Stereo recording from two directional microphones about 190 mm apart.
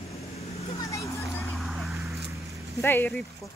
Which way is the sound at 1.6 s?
Centre (ahead or behind).